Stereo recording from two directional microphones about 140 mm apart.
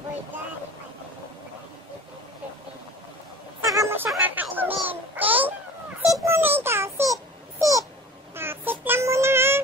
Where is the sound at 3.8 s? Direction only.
15° right (ahead or behind).